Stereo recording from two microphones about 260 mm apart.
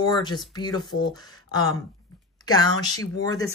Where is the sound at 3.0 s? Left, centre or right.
Centre.